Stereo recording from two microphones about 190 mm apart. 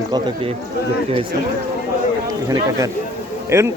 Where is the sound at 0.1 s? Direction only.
25° right (ahead or behind).